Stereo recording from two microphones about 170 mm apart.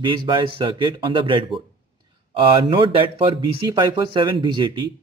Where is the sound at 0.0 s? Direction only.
30° right (ahead or behind).